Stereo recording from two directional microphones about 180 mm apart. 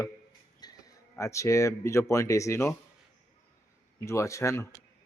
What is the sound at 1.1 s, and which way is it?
Speech, 15° left (ahead or behind).